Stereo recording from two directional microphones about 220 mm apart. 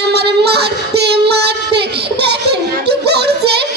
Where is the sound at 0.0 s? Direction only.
50° right (ahead or behind).